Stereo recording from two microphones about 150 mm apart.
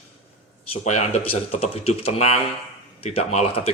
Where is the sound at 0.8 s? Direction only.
50° left (ahead or behind).